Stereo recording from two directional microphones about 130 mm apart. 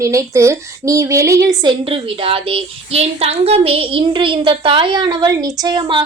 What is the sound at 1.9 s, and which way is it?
Speech, 45° right (ahead or behind).